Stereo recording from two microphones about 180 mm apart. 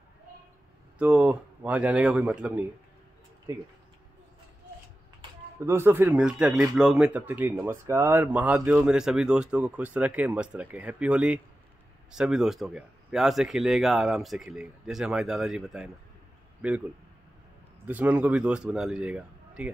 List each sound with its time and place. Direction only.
0.9 s speech: 5° right (ahead or behind)
3.5 s speech: 20° right (ahead or behind)
5.7 s speech: 10° right (ahead or behind)
17.8 s speech: 10° right (ahead or behind)